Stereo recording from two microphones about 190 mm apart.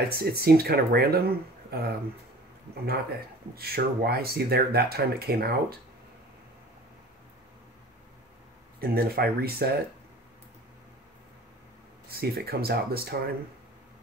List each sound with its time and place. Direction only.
0.1 s speech: 55° right (ahead or behind)
8.8 s speech: 55° right (ahead or behind)
12.1 s speech: 55° right (ahead or behind)